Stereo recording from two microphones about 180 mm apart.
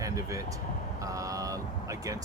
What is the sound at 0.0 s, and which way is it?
Speech, 15° right (ahead or behind).